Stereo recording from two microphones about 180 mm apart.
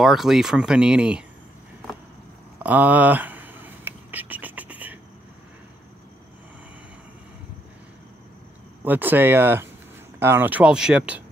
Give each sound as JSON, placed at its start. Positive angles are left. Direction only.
{"t": 0.0, "sound": "speech", "side_deg": 0}
{"t": 2.6, "sound": "whispering", "side_deg": -10}
{"t": 8.8, "sound": "speech", "side_deg": -10}